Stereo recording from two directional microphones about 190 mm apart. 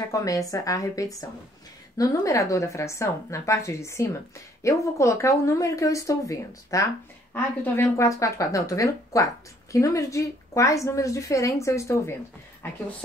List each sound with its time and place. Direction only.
0.1 s speech: 15° left (ahead or behind)